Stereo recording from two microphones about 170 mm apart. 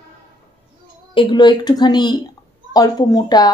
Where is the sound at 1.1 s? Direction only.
30° left (ahead or behind).